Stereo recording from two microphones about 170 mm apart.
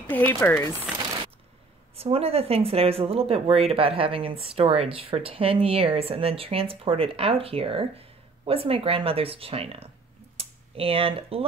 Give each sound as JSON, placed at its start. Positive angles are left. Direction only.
{"t": 0.0, "sound": "speech", "side_deg": 10}
{"t": 2.0, "sound": "speech", "side_deg": -35}